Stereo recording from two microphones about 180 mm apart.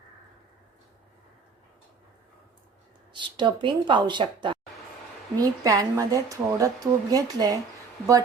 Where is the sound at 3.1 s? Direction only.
25° right (ahead or behind).